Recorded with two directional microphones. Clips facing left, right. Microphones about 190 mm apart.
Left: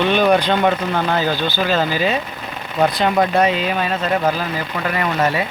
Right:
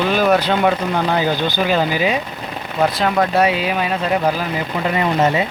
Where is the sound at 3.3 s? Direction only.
10° right (ahead or behind).